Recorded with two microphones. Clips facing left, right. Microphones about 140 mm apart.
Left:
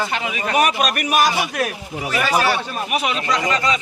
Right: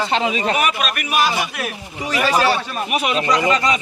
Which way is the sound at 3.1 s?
40° right (ahead or behind).